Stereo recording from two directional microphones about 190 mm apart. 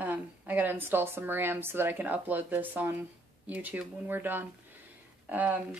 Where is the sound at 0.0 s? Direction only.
10° right (ahead or behind).